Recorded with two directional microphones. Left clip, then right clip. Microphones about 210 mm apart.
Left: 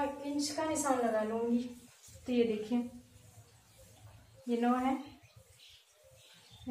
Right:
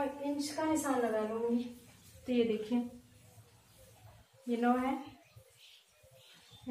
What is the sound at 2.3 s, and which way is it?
Speech, 5° left (ahead or behind).